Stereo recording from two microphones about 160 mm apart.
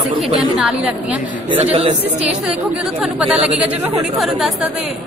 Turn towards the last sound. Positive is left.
turn(degrees=0)  # may be behind; listen again after turning